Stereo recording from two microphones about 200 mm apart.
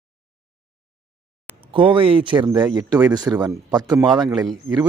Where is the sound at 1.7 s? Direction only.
25° right (ahead or behind).